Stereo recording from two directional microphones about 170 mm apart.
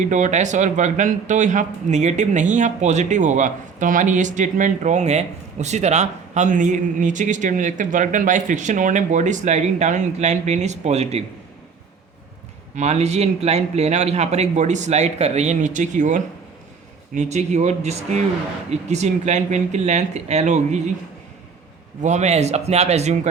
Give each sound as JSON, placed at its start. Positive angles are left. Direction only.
{"t": 0.0, "sound": "speech", "side_deg": -45}
{"t": 12.7, "sound": "a man's voice", "side_deg": -40}
{"t": 22.0, "sound": "a man's voice", "side_deg": -40}